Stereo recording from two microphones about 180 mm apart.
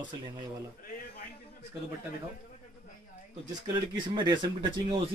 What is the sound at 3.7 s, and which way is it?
Speech, 25° right (ahead or behind).